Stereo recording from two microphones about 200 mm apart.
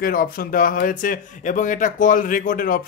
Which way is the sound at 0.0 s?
45° left (ahead or behind).